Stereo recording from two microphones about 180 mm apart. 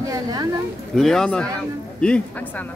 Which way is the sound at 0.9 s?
Centre (ahead or behind).